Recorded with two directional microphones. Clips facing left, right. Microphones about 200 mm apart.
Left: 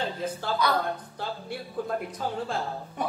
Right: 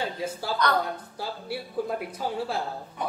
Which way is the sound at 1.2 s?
5° right (ahead or behind).